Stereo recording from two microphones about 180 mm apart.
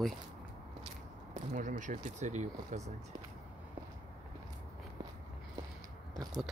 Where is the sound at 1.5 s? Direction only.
45° right (ahead or behind).